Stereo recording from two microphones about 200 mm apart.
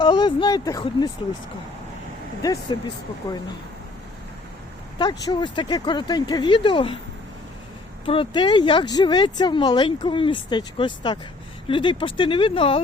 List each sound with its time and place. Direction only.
0.0 s speech: 20° left (ahead or behind)
2.4 s speech: 20° left (ahead or behind)
4.9 s speech: 20° left (ahead or behind)
8.0 s speech: 25° left (ahead or behind)